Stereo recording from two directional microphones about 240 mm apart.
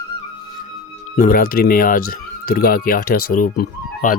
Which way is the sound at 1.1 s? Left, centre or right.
Left.